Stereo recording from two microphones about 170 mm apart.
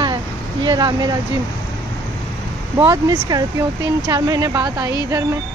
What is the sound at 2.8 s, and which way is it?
Speech, 20° right (ahead or behind).